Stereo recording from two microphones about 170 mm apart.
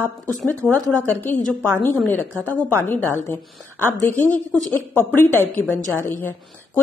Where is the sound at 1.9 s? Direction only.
10° left (ahead or behind).